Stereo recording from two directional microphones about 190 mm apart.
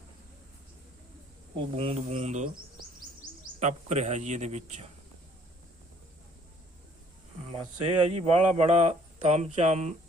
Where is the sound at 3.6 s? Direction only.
40° right (ahead or behind).